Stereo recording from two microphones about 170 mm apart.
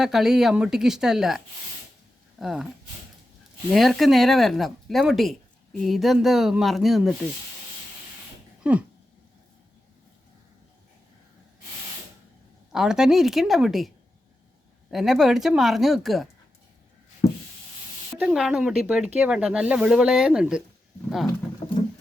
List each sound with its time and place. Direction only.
0.0 s speech: centre (ahead or behind)
2.4 s speech: centre (ahead or behind)
3.7 s speech: centre (ahead or behind)
8.7 s a sound: 5° right (ahead or behind)
12.7 s speech: 5° right (ahead or behind)
18.2 s speech: 5° right (ahead or behind)